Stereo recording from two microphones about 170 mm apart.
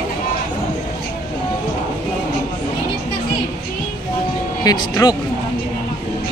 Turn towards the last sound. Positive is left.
turn(degrees=25)  # may be behind; listen again after turning